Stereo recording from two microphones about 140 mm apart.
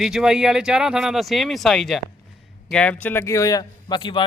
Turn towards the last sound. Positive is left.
turn(degrees=35)  # may be behind; listen again after turning